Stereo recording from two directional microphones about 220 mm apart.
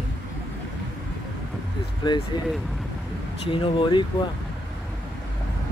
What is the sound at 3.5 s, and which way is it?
Speech, 20° left (ahead or behind).